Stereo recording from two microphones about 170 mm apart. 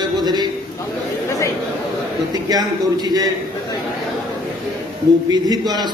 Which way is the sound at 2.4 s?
25° right (ahead or behind).